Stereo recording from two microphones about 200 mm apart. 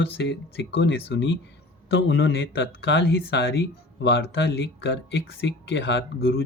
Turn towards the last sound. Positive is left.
turn(degrees=55)  # may be behind; listen again after turning